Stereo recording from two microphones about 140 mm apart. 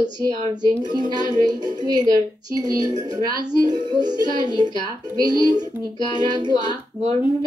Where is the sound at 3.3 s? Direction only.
30° right (ahead or behind).